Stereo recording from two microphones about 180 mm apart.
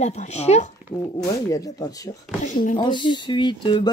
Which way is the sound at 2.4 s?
50° left (ahead or behind).